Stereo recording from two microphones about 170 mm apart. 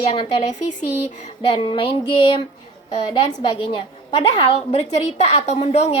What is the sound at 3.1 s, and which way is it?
A woman's voice, 40° left (ahead or behind).